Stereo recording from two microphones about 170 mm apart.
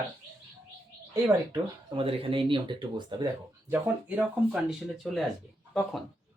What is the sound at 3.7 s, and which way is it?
Speech, 10° right (ahead or behind).